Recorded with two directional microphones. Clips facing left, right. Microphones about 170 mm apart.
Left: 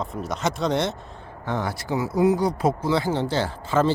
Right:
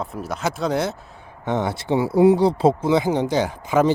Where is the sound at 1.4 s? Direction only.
20° right (ahead or behind).